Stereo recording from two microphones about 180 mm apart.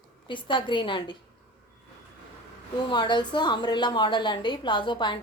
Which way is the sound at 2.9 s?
25° left (ahead or behind).